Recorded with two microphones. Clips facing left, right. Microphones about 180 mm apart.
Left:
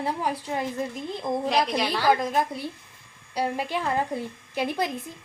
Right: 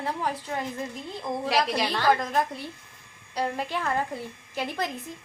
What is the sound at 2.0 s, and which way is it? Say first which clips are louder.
A woman's voice: left 1 dB; 10° left (ahead or behind).